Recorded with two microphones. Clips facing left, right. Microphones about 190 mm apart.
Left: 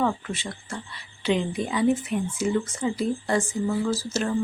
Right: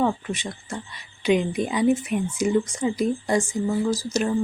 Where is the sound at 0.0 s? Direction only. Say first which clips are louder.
Right 2 dB; 15° right (ahead or behind).